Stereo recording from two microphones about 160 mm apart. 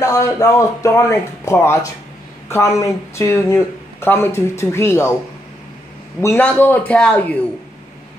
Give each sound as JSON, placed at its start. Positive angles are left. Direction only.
{"t": 0.0, "sound": "speech", "side_deg": 20}
{"t": 6.2, "sound": "speech", "side_deg": 10}